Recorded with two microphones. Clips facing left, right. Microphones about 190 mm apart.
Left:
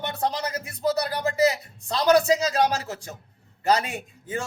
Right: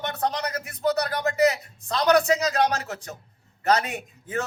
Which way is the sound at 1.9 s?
30° left (ahead or behind).